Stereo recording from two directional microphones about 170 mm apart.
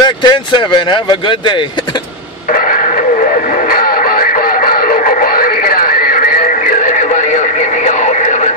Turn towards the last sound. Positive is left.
turn(degrees=55)  # may be behind; listen again after turning